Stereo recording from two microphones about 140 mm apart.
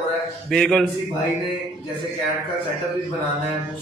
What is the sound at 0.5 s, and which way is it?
Speech, 5° left (ahead or behind).